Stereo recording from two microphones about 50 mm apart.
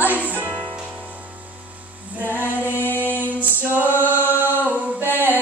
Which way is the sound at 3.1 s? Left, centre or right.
Right.